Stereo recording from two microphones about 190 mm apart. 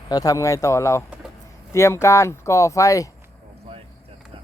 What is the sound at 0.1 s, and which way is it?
Speech, 20° left (ahead or behind).